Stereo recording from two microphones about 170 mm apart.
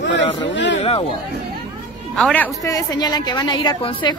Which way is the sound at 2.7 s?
20° left (ahead or behind).